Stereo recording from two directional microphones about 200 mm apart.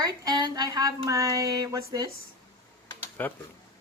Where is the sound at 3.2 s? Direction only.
10° left (ahead or behind).